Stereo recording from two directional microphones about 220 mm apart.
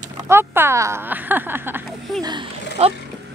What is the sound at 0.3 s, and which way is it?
Speech, 10° right (ahead or behind).